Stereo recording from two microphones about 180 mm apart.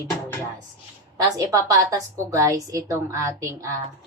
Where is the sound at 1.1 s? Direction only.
20° right (ahead or behind).